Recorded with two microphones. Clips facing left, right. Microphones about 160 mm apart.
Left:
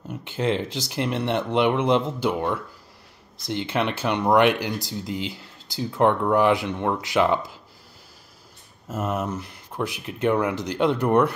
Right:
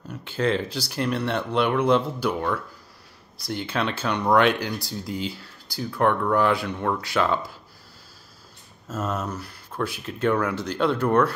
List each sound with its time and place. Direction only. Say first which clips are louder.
0.1 s speech: even; 20° left (ahead or behind)
8.8 s speech: left 2 dB; 15° left (ahead or behind)